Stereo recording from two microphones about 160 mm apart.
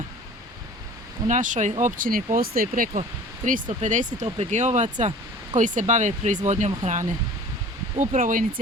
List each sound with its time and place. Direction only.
1.3 s speech: 50° right (ahead or behind)
3.4 s speech: 50° right (ahead or behind)